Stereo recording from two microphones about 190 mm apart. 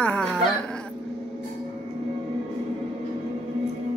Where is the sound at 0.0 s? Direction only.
5° left (ahead or behind).